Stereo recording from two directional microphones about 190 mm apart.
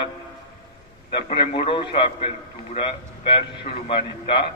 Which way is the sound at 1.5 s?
25° left (ahead or behind).